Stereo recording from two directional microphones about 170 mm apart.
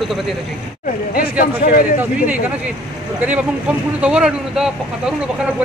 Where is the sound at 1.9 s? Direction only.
10° right (ahead or behind).